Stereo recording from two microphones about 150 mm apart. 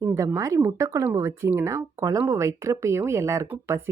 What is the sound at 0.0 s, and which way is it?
Speech, 20° right (ahead or behind).